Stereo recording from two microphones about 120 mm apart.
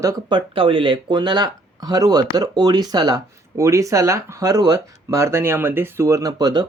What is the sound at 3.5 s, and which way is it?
Speech, 25° right (ahead or behind).